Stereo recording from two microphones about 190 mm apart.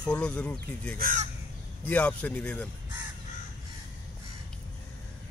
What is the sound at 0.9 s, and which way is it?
Speech, 45° right (ahead or behind).